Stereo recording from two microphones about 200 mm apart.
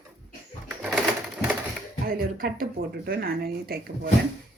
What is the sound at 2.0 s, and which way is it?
Speech, 45° right (ahead or behind).